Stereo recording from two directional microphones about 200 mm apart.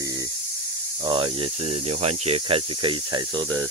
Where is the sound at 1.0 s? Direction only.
25° right (ahead or behind).